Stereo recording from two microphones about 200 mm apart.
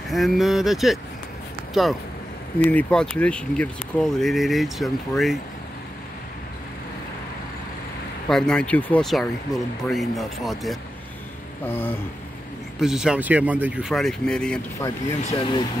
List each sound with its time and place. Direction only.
0.1 s speech: centre (ahead or behind)
8.3 s speech: 5° left (ahead or behind)
11.6 s a sound: 10° left (ahead or behind)
12.7 s speech: 5° right (ahead or behind)
15.3 s speech: 25° left (ahead or behind)